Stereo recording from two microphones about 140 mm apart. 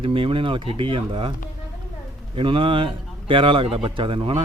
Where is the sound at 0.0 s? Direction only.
40° right (ahead or behind).